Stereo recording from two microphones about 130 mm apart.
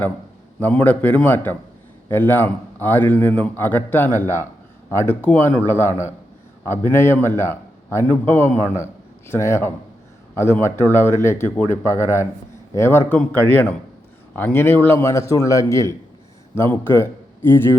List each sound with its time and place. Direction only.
0.6 s a man's voice: 10° left (ahead or behind)